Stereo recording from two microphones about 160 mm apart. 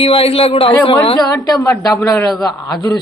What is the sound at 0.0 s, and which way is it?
A woman's voice, 35° left (ahead or behind).